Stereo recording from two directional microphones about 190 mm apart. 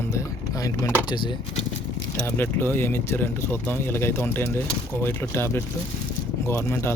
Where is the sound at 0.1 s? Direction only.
15° left (ahead or behind).